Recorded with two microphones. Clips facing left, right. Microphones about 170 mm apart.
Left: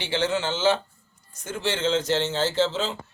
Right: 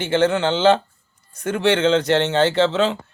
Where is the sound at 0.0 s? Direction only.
55° right (ahead or behind).